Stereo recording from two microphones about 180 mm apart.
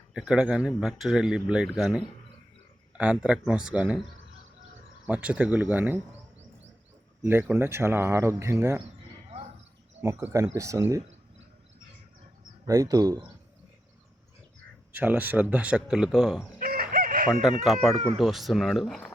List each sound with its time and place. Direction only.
0.1 s speech: 5° right (ahead or behind)
5.0 s speech: 5° right (ahead or behind)
7.2 s speech: 10° right (ahead or behind)
10.0 s speech: 15° right (ahead or behind)
12.6 s speech: 20° right (ahead or behind)
14.9 s speech: 10° right (ahead or behind)
16.6 s chicken: 55° right (ahead or behind)
17.4 s speech: centre (ahead or behind)